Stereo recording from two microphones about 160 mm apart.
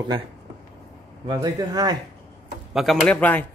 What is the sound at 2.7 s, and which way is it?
Speech, centre (ahead or behind).